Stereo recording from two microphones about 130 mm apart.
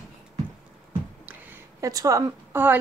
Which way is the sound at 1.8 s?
25° right (ahead or behind).